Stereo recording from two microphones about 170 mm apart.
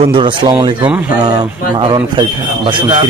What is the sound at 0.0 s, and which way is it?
Speech, 30° right (ahead or behind).